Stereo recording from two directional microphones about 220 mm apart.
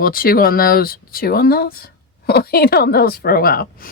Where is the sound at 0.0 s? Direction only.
40° left (ahead or behind).